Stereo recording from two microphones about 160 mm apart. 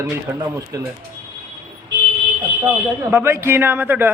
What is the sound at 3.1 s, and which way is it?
A man's voice, 15° right (ahead or behind).